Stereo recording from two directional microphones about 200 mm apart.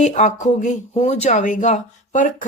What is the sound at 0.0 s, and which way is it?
A woman's voice, 35° left (ahead or behind).